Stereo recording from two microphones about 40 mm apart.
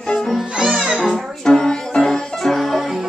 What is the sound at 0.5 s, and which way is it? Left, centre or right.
Music, centre.